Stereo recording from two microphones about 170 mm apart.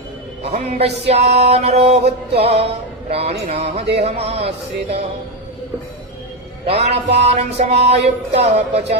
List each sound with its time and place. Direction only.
0.4 s music: 40° right (ahead or behind)
6.7 s music: 35° right (ahead or behind)